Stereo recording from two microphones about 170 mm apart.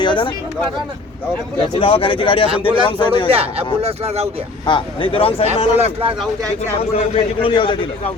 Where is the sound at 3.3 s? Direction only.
35° right (ahead or behind).